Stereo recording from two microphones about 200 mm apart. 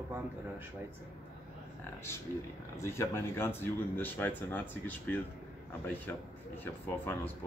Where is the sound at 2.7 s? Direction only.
15° left (ahead or behind).